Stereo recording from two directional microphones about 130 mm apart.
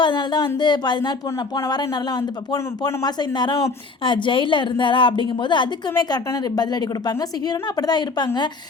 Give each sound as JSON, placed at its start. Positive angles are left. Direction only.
{"t": 0.0, "sound": "a woman's voice", "side_deg": 35}
{"t": 2.5, "sound": "a woman's voice", "side_deg": 30}
{"t": 7.4, "sound": "a woman's voice", "side_deg": 30}